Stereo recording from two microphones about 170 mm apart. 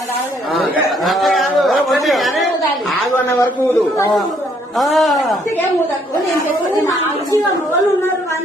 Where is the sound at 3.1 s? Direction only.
10° left (ahead or behind).